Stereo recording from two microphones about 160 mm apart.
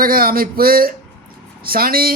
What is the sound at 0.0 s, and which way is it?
A man's voice, 65° right (ahead or behind).